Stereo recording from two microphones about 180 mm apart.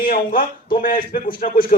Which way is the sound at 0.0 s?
50° left (ahead or behind).